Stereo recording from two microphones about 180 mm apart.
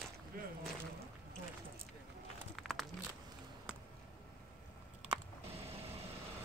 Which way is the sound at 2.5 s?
Centre (ahead or behind).